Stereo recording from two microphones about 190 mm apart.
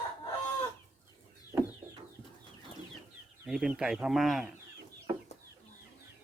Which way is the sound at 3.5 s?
5° right (ahead or behind).